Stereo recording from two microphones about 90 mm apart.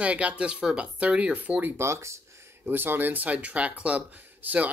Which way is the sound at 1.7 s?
30° right (ahead or behind).